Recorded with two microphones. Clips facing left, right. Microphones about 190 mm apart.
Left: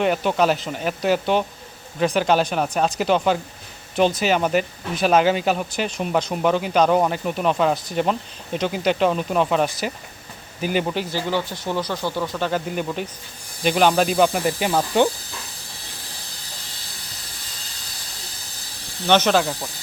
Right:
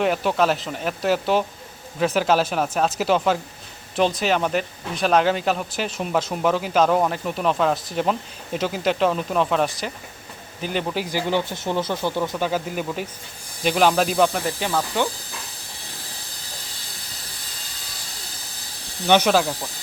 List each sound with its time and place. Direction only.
0.0 s speech: centre (ahead or behind)
10.9 s speech: 15° right (ahead or behind)
12.5 s speech: 5° right (ahead or behind)
14.7 s speech: 25° left (ahead or behind)
19.0 s speech: 10° right (ahead or behind)